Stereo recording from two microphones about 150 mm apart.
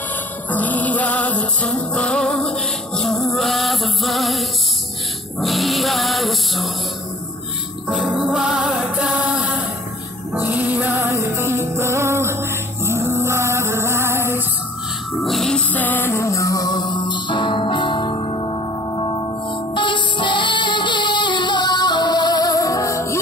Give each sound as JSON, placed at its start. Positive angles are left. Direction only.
{"t": 0.5, "sound": "music", "side_deg": 10}
{"t": 7.9, "sound": "music", "side_deg": -5}
{"t": 15.2, "sound": "music", "side_deg": 0}